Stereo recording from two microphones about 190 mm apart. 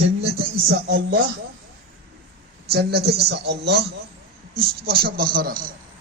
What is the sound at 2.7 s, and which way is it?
A woman's voice, 55° right (ahead or behind).